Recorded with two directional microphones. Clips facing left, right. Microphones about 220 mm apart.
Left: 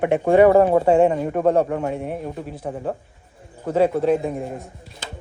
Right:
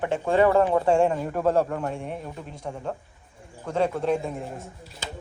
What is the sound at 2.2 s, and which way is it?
Speech, 50° left (ahead or behind).